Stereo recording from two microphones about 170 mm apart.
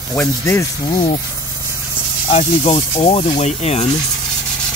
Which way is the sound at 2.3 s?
40° left (ahead or behind).